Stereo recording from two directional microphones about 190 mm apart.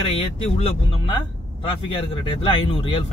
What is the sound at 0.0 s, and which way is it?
Speech, 30° left (ahead or behind).